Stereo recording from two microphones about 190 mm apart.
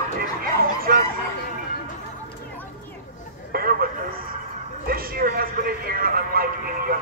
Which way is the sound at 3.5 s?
50° right (ahead or behind).